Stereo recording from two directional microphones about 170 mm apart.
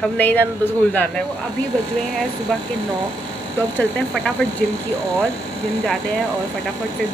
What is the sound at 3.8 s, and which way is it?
Speech, 5° left (ahead or behind).